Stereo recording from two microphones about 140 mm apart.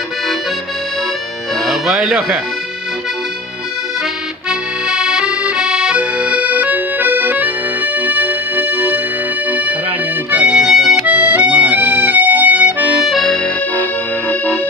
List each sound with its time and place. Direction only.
1.5 s music: centre (ahead or behind)
4.5 s accordion: 5° right (ahead or behind)
10.3 s accordion: 5° right (ahead or behind)
13.0 s accordion: centre (ahead or behind)
14.2 s music: 10° left (ahead or behind)